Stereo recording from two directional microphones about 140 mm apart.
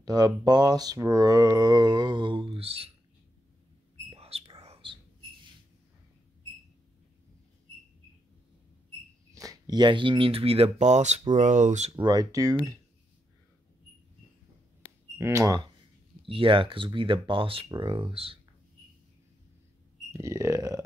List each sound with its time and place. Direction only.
0.0 s speech: 30° right (ahead or behind); by 2.9 s 45° right (ahead or behind)
4.1 s whispering: 45° right (ahead or behind)
9.3 s speech: 25° right (ahead or behind); by 11.9 s 60° right (ahead or behind)
11.9 s speech: 30° right (ahead or behind)
15.1 s speech: 20° right (ahead or behind)
16.3 s speech: 40° right (ahead or behind)
20.1 s speech: 20° right (ahead or behind)